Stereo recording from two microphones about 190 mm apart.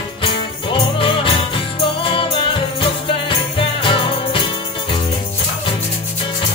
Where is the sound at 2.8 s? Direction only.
25° left (ahead or behind).